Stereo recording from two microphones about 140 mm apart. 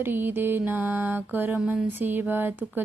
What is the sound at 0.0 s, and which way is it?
Music, 15° right (ahead or behind).